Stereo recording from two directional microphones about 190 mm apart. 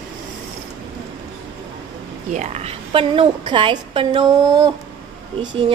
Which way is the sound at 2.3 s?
40° right (ahead or behind).